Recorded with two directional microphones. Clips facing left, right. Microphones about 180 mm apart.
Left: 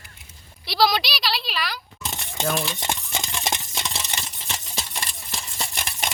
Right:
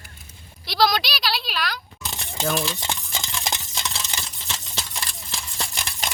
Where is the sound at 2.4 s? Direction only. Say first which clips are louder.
Right 1 dB; centre (ahead or behind).